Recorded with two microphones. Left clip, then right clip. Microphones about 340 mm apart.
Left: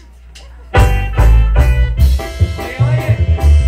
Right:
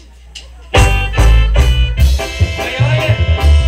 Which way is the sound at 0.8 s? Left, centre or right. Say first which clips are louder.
Right 3 dB; right.